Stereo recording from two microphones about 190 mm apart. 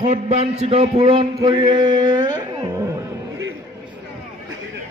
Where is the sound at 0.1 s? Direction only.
35° right (ahead or behind).